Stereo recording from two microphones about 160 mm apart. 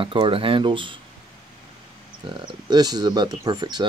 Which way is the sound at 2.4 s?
25° right (ahead or behind).